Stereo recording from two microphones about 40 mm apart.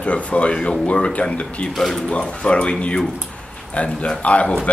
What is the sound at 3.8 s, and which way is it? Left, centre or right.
Speech, left.